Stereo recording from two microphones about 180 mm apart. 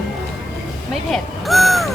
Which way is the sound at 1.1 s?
Centre (ahead or behind).